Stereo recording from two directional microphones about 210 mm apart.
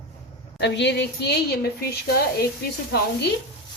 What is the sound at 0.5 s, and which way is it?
A woman's voice, 55° left (ahead or behind).